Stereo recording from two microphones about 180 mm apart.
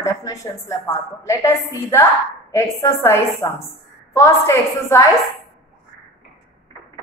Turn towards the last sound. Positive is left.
turn(degrees=15)  # may be behind; listen again after turning